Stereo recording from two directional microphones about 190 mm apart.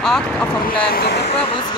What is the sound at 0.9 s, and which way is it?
Speech, 60° left (ahead or behind).